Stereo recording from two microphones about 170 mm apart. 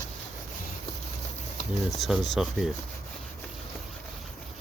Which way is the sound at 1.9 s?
Centre (ahead or behind).